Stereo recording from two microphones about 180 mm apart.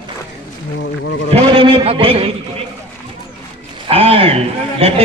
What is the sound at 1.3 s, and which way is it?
A man's voice, 30° right (ahead or behind).